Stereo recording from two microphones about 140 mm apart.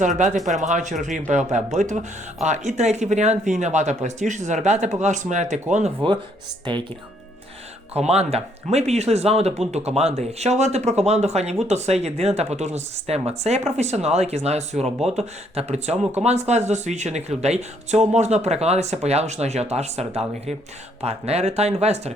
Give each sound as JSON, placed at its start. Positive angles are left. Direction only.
{"t": 0.6, "sound": "speech", "side_deg": -60}
{"t": 7.9, "sound": "speech", "side_deg": -50}